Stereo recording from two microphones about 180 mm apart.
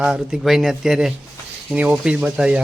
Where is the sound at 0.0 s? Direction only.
5° right (ahead or behind).